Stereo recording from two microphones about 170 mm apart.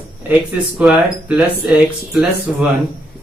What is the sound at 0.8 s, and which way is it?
Speech, 5° right (ahead or behind).